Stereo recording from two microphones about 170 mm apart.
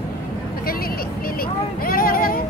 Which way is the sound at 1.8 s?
60° left (ahead or behind).